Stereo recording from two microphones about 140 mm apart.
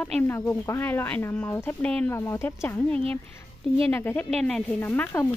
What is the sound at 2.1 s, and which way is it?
Speech, 20° left (ahead or behind).